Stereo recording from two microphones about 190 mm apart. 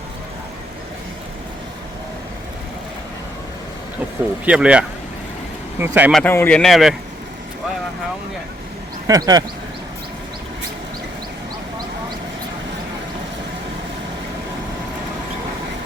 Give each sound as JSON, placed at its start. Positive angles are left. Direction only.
{"t": 4.4, "sound": "speech", "side_deg": -5}
{"t": 6.1, "sound": "speech", "side_deg": 0}
{"t": 9.0, "sound": "speech", "side_deg": -20}